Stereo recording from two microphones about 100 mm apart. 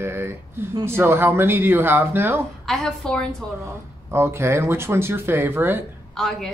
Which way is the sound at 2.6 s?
5° left (ahead or behind).